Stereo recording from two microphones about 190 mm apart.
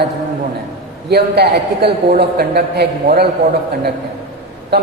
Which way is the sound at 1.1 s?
55° right (ahead or behind).